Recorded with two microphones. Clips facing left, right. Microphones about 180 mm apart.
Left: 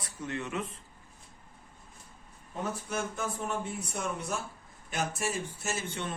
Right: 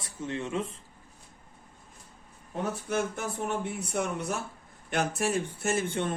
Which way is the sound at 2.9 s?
65° right (ahead or behind).